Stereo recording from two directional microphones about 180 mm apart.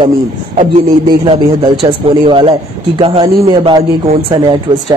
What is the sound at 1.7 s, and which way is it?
A man's voice, 30° right (ahead or behind).